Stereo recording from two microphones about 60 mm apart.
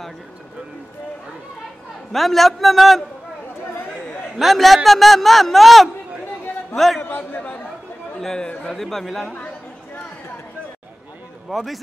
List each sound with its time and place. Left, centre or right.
2.1 s speech: centre
4.4 s a man's voice: centre
7.0 s a man's voice: left
8.2 s speech: centre
11.4 s speech: centre